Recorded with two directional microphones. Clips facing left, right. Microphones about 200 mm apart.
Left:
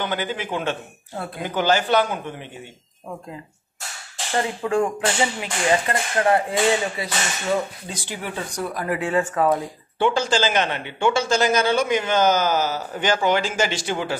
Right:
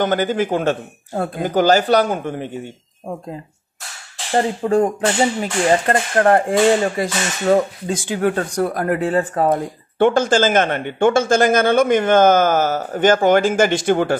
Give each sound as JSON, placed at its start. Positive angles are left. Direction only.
{"t": 0.0, "sound": "speech", "side_deg": -45}
{"t": 4.3, "sound": "speech", "side_deg": -40}
{"t": 9.0, "sound": "speech", "side_deg": -35}
{"t": 9.5, "sound": "speech", "side_deg": -50}